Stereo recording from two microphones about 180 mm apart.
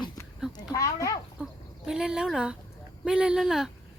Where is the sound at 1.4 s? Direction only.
5° right (ahead or behind).